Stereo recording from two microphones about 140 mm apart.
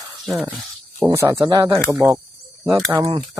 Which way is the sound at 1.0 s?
20° right (ahead or behind).